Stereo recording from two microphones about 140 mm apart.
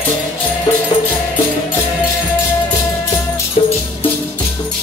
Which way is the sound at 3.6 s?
45° left (ahead or behind).